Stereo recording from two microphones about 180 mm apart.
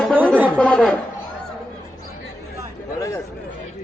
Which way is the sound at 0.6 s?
5° left (ahead or behind).